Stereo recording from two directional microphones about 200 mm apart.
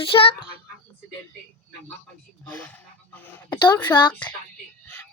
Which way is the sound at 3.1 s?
10° left (ahead or behind).